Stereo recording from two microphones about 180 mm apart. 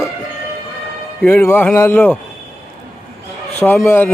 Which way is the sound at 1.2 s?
10° left (ahead or behind).